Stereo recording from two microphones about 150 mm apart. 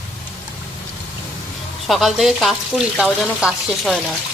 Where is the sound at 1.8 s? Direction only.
Centre (ahead or behind).